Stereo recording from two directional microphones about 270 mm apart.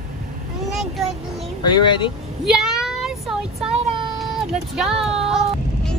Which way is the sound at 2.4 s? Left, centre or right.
Centre.